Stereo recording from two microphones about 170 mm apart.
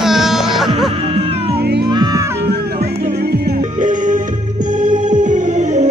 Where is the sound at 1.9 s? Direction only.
20° right (ahead or behind).